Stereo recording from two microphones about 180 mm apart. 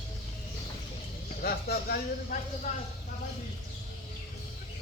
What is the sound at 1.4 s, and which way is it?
Speech, 55° left (ahead or behind).